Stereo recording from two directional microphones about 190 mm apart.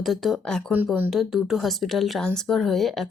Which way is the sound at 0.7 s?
10° right (ahead or behind).